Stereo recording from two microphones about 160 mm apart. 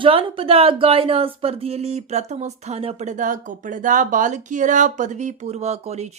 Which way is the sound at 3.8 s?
55° right (ahead or behind).